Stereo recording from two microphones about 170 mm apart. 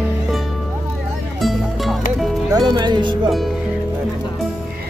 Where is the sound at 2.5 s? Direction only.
25° right (ahead or behind).